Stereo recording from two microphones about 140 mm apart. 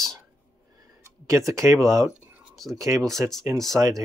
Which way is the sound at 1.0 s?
20° right (ahead or behind).